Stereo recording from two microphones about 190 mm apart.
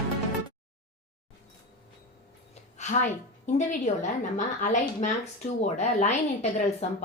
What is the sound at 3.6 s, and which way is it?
A woman's voice, 40° left (ahead or behind).